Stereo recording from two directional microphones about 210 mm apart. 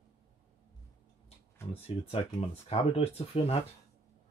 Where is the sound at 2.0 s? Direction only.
30° left (ahead or behind).